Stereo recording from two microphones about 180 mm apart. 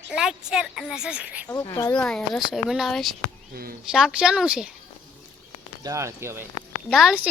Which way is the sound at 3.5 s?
55° right (ahead or behind).